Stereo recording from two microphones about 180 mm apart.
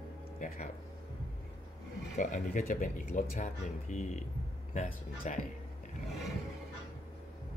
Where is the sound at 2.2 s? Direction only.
45° left (ahead or behind).